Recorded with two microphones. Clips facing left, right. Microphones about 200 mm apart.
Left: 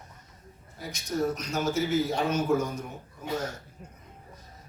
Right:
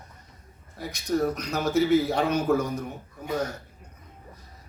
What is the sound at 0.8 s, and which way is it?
A man's voice, 65° right (ahead or behind).